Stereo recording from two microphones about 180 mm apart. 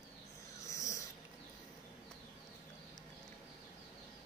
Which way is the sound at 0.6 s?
15° left (ahead or behind).